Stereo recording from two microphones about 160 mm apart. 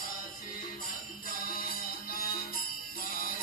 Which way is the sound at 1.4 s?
65° left (ahead or behind).